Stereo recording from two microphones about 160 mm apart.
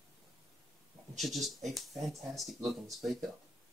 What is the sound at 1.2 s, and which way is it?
Speech, centre (ahead or behind).